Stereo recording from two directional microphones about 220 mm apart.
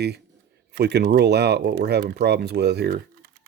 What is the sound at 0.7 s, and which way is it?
Speech, 50° right (ahead or behind).